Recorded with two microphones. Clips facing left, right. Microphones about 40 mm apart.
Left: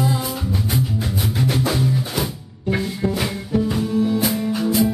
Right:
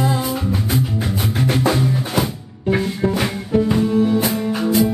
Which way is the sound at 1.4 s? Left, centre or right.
Centre.